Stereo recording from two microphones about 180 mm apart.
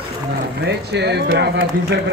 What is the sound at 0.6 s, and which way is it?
Speech, 70° right (ahead or behind).